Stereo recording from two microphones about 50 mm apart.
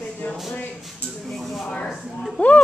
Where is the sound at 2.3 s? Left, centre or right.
Left.